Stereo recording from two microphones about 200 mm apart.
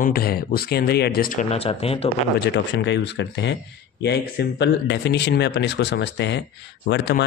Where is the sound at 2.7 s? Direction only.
60° left (ahead or behind).